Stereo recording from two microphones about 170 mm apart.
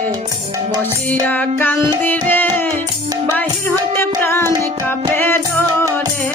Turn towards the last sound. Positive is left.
turn(degrees=15)  # may be behind; listen again after turning